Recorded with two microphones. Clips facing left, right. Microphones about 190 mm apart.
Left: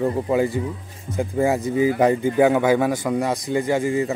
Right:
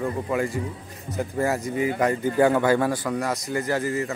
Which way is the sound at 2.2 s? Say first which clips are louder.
Left 3 dB; 10° left (ahead or behind).